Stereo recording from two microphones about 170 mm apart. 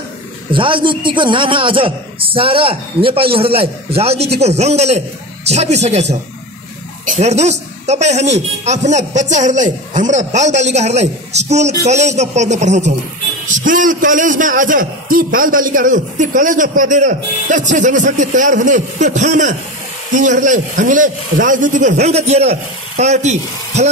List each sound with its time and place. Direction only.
0.5 s a man's voice: 30° right (ahead or behind)